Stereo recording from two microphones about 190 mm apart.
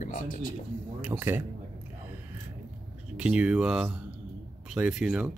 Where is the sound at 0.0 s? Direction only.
45° left (ahead or behind).